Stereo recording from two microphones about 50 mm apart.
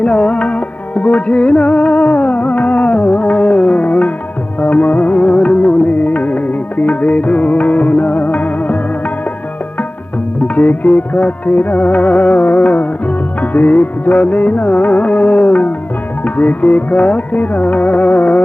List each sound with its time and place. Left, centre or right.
0.0 s music: centre
5.1 s music: centre
6.1 s music: left
10.4 s music: left
16.2 s music: left
16.9 s music: centre
17.3 s music: left